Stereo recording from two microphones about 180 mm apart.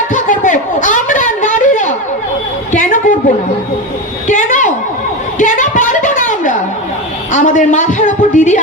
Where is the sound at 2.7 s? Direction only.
45° left (ahead or behind).